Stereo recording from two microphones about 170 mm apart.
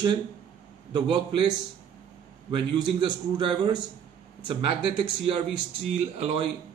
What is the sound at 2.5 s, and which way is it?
Speech, 25° right (ahead or behind).